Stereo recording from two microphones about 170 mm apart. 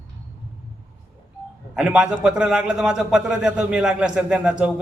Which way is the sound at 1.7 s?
5° right (ahead or behind).